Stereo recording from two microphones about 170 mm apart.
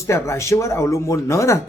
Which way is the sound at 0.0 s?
15° left (ahead or behind).